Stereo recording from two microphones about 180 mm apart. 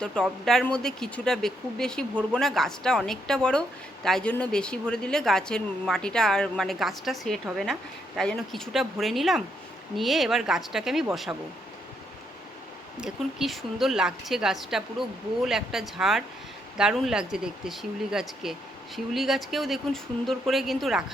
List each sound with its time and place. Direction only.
0.0 s a woman's voice: 5° left (ahead or behind)
13.0 s a woman's voice: centre (ahead or behind)